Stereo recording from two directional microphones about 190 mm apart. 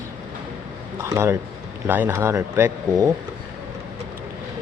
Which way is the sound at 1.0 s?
15° right (ahead or behind).